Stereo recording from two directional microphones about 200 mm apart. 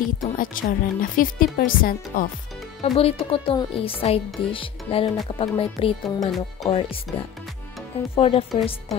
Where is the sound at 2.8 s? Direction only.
30° left (ahead or behind).